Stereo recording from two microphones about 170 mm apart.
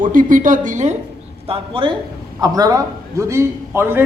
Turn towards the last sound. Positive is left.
turn(degrees=-15)  # may be behind; listen again after turning